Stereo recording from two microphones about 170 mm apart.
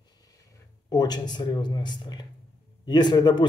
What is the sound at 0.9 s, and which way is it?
Speech, 25° left (ahead or behind).